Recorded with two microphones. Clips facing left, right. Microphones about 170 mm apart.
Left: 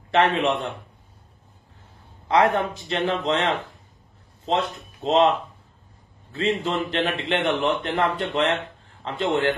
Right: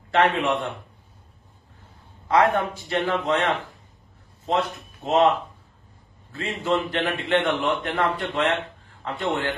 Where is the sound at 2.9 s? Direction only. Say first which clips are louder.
Even; 25° left (ahead or behind).